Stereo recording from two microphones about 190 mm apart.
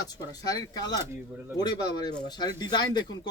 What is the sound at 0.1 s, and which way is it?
Speech, 20° left (ahead or behind).